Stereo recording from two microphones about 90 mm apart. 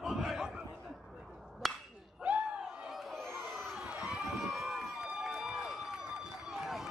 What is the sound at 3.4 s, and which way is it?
Crowd, centre (ahead or behind).